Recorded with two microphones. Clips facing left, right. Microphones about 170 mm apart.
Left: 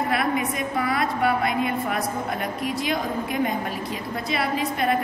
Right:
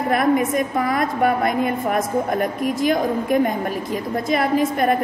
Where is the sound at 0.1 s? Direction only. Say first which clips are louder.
Right 6 dB; 45° right (ahead or behind).